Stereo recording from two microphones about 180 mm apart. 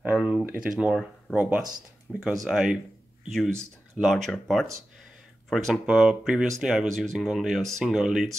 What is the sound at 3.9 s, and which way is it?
Speech, centre (ahead or behind).